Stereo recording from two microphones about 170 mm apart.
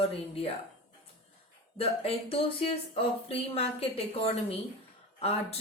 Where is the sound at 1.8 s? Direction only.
35° left (ahead or behind).